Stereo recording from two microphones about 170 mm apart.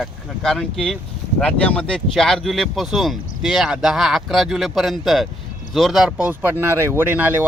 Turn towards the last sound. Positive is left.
turn(degrees=-10)  # may be behind; listen again after turning